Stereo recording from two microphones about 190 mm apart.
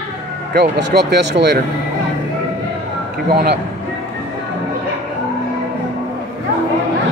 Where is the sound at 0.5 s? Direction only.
60° right (ahead or behind).